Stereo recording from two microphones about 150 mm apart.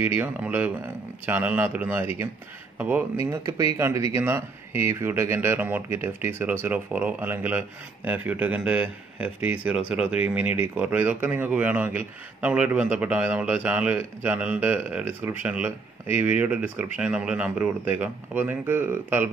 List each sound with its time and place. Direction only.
0.0 s speech: 10° right (ahead or behind)
3.3 s speech: 20° right (ahead or behind)